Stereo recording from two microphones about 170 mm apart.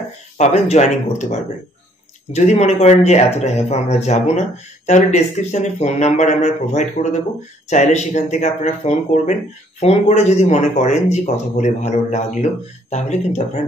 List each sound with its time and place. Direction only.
0.4 s speech: 40° left (ahead or behind)